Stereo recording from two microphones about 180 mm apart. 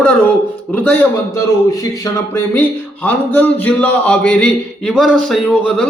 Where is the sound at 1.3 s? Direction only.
20° left (ahead or behind).